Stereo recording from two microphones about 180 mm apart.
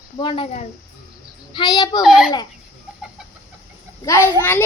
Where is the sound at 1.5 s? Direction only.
25° left (ahead or behind).